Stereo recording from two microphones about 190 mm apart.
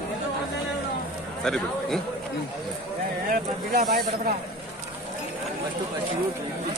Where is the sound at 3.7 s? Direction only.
50° right (ahead or behind).